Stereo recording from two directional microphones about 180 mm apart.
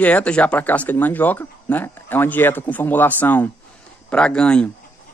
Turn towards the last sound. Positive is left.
turn(degrees=5)  # may be behind; listen again after turning